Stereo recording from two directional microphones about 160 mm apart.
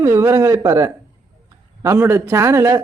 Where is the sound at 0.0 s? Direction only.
15° right (ahead or behind).